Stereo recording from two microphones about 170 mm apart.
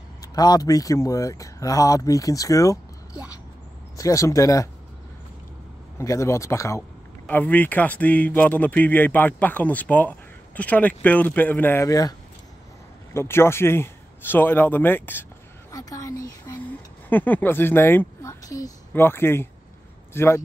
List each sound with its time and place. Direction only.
0.2 s speech: 20° left (ahead or behind)
5.9 s a man's voice: 15° left (ahead or behind)